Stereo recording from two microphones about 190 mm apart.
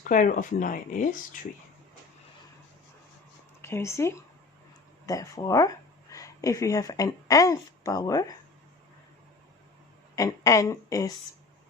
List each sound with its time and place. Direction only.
0.0 s speech: 45° left (ahead or behind)
3.6 s speech: 15° left (ahead or behind)
10.2 s a woman's voice: 15° left (ahead or behind)